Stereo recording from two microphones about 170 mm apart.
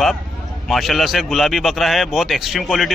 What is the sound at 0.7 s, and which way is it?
Speech, centre (ahead or behind).